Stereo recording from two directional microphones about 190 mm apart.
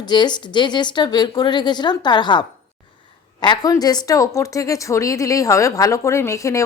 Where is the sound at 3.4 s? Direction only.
20° left (ahead or behind).